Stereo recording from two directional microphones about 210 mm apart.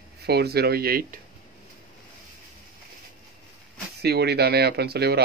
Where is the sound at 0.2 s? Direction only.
50° right (ahead or behind).